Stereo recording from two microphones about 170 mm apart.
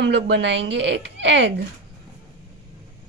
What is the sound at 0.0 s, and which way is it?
A woman's voice, 90° right.